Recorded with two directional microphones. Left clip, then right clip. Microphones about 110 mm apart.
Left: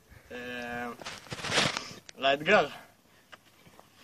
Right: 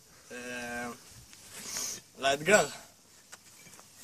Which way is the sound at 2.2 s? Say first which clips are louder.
Left 1 dB; 25° right (ahead or behind).